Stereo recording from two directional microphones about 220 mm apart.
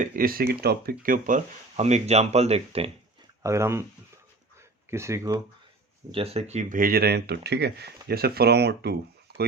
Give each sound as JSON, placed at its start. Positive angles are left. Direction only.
{"t": 0.0, "sound": "speech", "side_deg": -40}
{"t": 3.4, "sound": "speech", "side_deg": -15}
{"t": 4.9, "sound": "speech", "side_deg": -10}
{"t": 6.1, "sound": "speech", "side_deg": -25}